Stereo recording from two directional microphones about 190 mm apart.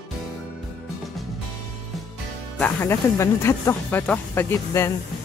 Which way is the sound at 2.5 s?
10° left (ahead or behind).